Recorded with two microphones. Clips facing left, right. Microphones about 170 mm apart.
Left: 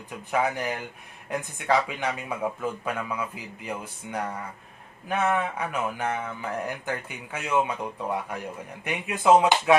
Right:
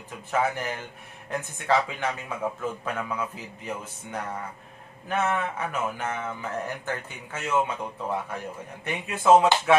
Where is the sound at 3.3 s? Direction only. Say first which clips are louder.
Even; 10° left (ahead or behind).